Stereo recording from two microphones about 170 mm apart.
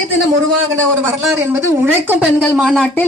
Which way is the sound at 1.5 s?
15° right (ahead or behind).